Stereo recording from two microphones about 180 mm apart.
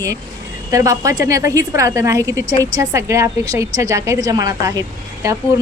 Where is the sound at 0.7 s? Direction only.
20° right (ahead or behind).